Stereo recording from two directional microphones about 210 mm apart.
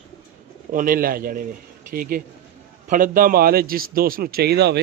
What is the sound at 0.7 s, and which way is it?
Speech, 40° right (ahead or behind).